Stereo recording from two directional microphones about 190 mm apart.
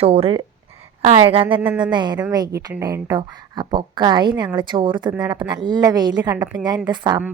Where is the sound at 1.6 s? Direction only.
5° right (ahead or behind).